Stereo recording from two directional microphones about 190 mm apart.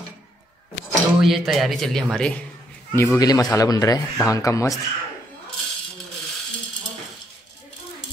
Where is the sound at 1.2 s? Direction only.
Centre (ahead or behind); by 4.8 s 15° left (ahead or behind).